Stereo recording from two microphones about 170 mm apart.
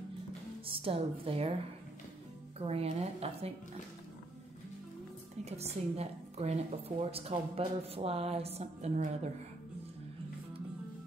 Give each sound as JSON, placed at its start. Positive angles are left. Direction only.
{"t": 0.7, "sound": "a woman's voice", "side_deg": -35}
{"t": 2.6, "sound": "a woman's voice", "side_deg": -35}
{"t": 5.4, "sound": "a woman's voice", "side_deg": -40}